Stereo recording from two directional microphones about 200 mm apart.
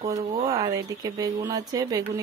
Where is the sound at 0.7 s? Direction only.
20° right (ahead or behind).